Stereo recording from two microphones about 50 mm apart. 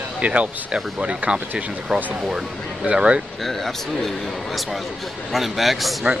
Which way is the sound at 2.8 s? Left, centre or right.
Right.